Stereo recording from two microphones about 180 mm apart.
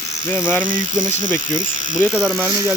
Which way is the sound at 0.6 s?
25° right (ahead or behind).